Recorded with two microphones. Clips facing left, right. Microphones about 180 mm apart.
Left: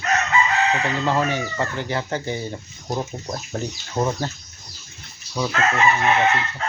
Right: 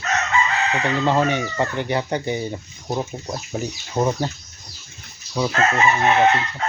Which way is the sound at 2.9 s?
5° right (ahead or behind).